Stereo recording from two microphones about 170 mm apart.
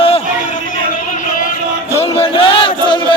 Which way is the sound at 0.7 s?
45° left (ahead or behind).